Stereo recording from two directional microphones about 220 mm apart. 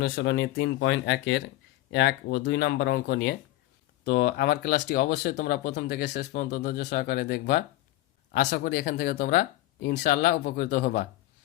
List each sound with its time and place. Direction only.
0.0 s speech: 50° left (ahead or behind)